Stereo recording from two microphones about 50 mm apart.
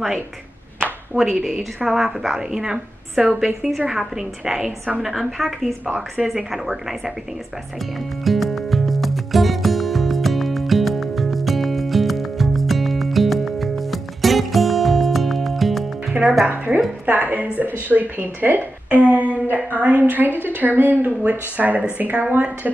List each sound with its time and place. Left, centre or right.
1.1 s a woman's voice: centre
8.2 s music: centre
16.1 s music: right
16.4 s a woman's voice: right